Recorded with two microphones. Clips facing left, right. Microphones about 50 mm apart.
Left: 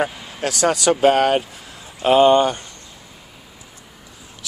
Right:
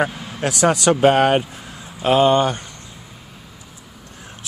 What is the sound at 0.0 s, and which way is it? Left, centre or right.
Speech, centre.